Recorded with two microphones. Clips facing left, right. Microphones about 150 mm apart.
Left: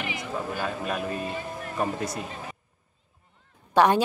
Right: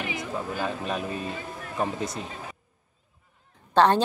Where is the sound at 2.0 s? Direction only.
20° right (ahead or behind).